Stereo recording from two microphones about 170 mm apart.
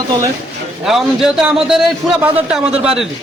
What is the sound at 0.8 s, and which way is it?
Speech, centre (ahead or behind).